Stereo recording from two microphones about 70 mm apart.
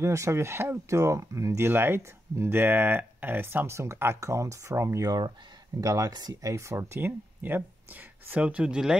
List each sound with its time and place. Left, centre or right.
0.0 s speech: right
1.7 s speech: right
5.8 s speech: right
6.8 s speech: right; by 8.9 s centre